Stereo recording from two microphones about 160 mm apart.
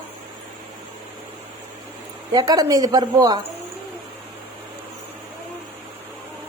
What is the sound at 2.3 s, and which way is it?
A woman's voice, 25° right (ahead or behind).